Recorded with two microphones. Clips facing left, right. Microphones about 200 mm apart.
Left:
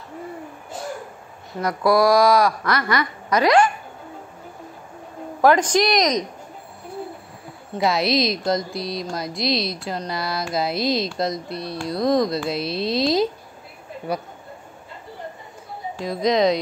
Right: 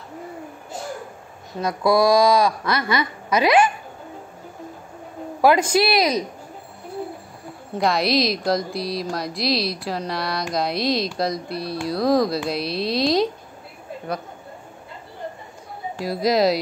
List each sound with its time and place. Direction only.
1.6 s a child's voice: 15° right (ahead or behind)
5.4 s speech: 10° right (ahead or behind)
7.7 s a man's voice: centre (ahead or behind)
16.0 s speech: 5° right (ahead or behind)